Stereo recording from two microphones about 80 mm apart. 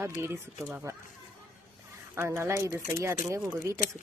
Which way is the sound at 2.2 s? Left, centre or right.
Right.